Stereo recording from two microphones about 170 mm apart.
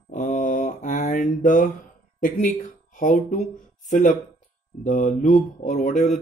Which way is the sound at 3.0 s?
50° left (ahead or behind).